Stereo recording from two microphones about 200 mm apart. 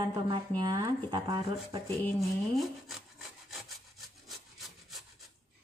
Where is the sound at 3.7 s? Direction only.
Centre (ahead or behind).